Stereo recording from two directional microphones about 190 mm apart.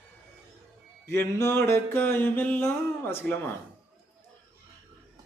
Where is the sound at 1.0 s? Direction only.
15° left (ahead or behind).